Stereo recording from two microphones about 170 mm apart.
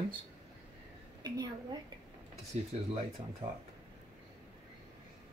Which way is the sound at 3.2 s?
30° right (ahead or behind).